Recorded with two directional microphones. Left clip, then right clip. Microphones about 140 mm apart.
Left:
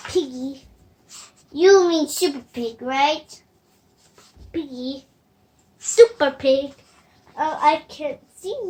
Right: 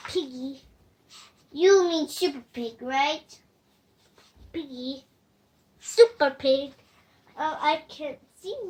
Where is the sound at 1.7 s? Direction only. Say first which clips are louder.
Left 6 dB; 5° right (ahead or behind).